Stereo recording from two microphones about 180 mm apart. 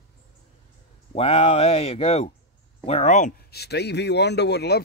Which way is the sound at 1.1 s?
30° left (ahead or behind).